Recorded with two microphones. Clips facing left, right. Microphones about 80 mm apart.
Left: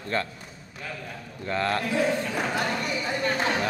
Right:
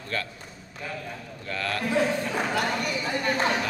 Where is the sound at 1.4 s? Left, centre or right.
Left.